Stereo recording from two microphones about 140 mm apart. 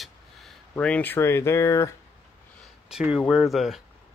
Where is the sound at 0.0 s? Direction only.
5° left (ahead or behind); by 1.9 s 20° left (ahead or behind).